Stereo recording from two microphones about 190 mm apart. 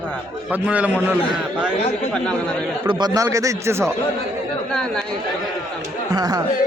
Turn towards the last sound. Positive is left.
turn(degrees=-20)  # may be behind; listen again after turning